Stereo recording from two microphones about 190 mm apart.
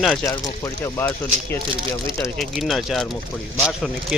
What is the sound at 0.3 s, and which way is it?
Speech, 15° left (ahead or behind).